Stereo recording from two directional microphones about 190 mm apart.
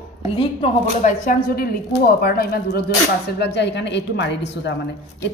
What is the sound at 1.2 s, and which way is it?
A woman's voice, 50° left (ahead or behind).